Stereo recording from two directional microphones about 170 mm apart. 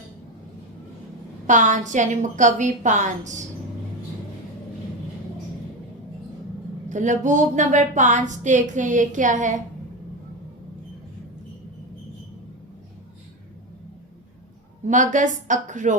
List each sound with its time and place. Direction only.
1.5 s a woman's voice: 45° right (ahead or behind)
6.8 s a woman's voice: 45° right (ahead or behind)
14.8 s a woman's voice: 45° right (ahead or behind)